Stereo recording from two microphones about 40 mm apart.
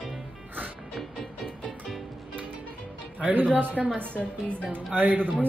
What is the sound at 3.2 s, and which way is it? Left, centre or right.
Speech, right.